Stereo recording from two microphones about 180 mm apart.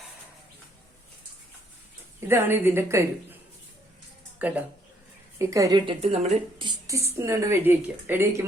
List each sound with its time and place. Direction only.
2.2 s a woman's voice: 10° right (ahead or behind)
4.4 s a woman's voice: 10° right (ahead or behind)